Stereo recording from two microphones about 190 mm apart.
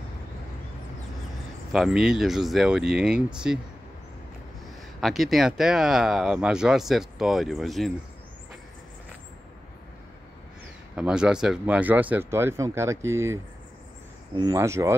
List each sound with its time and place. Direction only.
1.7 s speech: centre (ahead or behind)
5.0 s speech: centre (ahead or behind)
11.0 s speech: 5° right (ahead or behind)